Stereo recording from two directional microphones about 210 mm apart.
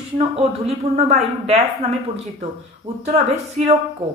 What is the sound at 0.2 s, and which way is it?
Speech, 30° right (ahead or behind).